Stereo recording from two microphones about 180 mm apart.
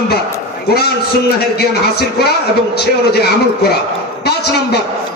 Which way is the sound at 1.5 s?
60° left (ahead or behind).